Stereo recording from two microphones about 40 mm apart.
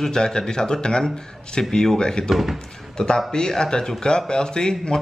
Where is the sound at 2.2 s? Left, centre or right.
Centre.